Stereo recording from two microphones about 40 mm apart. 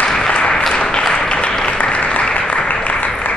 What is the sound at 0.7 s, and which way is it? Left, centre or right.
Applause, centre.